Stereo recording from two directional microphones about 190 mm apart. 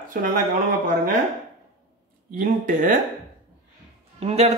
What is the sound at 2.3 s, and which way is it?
Speech, 45° right (ahead or behind).